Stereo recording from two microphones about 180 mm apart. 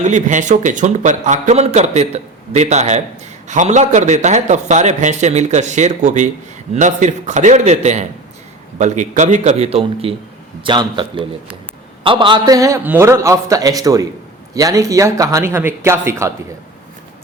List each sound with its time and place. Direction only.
0.0 s a man's voice: 40° right (ahead or behind); by 16.3 s 15° right (ahead or behind)